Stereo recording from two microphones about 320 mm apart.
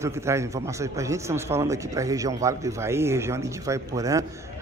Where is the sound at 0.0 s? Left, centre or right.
Centre.